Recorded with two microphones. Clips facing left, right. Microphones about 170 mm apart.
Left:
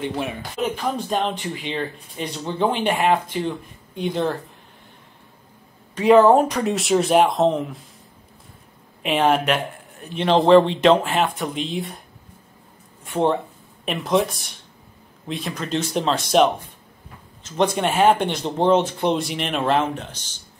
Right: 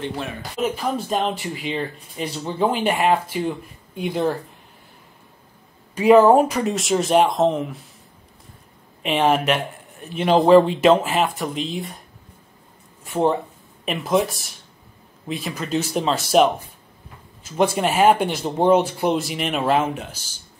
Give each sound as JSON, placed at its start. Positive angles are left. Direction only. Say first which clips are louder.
{"t": 0.0, "sound": "speech", "louder": "left 2 dB", "side_deg": 15}
{"t": 0.4, "sound": "speech", "louder": "right 1 dB", "side_deg": -5}
{"t": 5.9, "sound": "speech", "louder": "right 1 dB", "side_deg": -10}
{"t": 9.0, "sound": "speech", "louder": "even", "side_deg": 0}
{"t": 13.0, "sound": "speech", "louder": "even", "side_deg": 0}